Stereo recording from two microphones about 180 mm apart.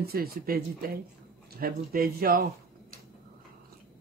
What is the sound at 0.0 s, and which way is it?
Speech, 60° right (ahead or behind).